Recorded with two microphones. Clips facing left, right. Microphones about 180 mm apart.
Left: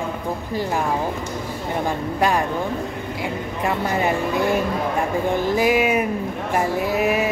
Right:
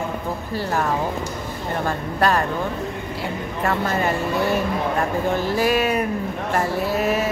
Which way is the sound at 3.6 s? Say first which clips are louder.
Even; 15° left (ahead or behind).